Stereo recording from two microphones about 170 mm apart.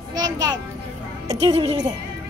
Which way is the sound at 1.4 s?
35° right (ahead or behind).